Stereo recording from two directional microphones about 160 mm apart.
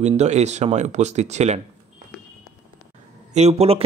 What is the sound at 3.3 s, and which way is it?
Speech, 40° right (ahead or behind).